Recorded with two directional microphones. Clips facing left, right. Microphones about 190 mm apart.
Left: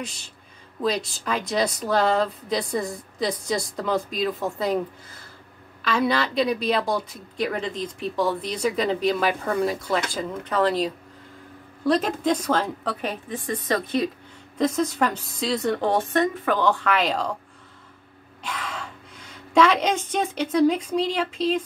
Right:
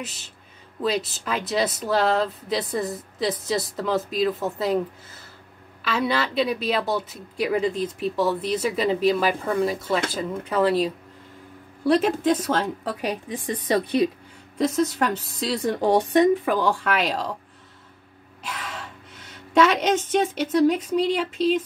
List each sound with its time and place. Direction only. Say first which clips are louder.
0.0 s a woman's voice: left 1 dB; 5° right (ahead or behind)
13.3 s speech: left 1 dB; 15° right (ahead or behind)
14.6 s a woman's voice: even; 5° right (ahead or behind)
18.4 s a sound: left 2 dB; 5° right (ahead or behind)